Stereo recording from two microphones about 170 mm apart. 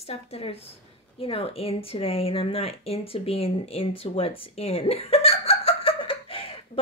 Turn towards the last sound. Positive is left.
turn(degrees=35)  # may be behind; listen again after turning